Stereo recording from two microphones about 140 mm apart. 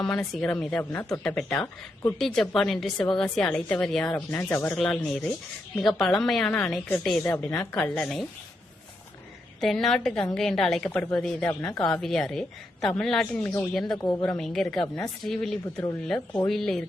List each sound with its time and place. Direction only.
0.4 s speech: 5° left (ahead or behind)
2.1 s a woman's voice: centre (ahead or behind)
4.7 s a woman's voice: 5° left (ahead or behind)
7.8 s a woman's voice: 5° left (ahead or behind)
9.6 s a woman's voice: centre (ahead or behind)
14.0 s a woman's voice: 30° left (ahead or behind)
14.3 s a woman's voice: 5° left (ahead or behind)